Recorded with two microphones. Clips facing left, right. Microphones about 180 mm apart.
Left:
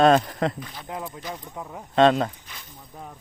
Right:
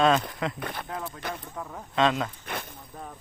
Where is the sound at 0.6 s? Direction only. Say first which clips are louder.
Right 4 dB; 60° right (ahead or behind).